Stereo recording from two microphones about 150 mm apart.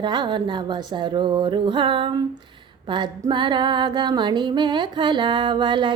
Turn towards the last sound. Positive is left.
turn(degrees=-30)  # may be behind; listen again after turning